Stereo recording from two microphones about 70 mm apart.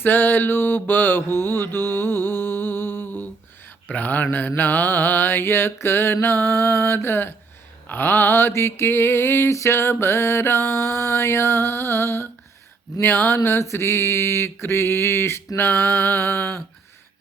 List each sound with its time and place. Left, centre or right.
0.0 s mantra: left